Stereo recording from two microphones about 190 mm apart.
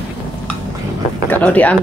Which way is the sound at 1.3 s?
10° left (ahead or behind).